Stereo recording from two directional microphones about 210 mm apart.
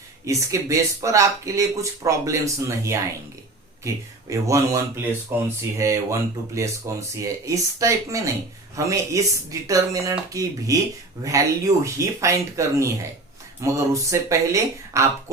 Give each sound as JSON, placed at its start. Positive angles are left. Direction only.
{"t": 0.3, "sound": "speech", "side_deg": -15}